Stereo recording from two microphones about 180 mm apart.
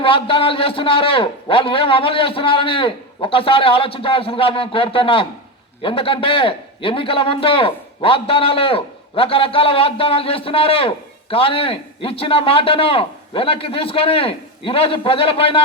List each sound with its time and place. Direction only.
0.0 s a man's voice: 30° left (ahead or behind)